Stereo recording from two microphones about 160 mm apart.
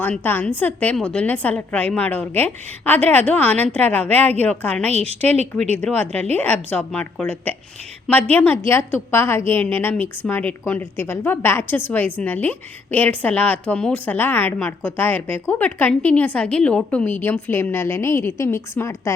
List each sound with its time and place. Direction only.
0.0 s a woman's voice: 10° left (ahead or behind)
4.9 s a woman's voice: 40° right (ahead or behind)
5.7 s a woman's voice: 10° left (ahead or behind)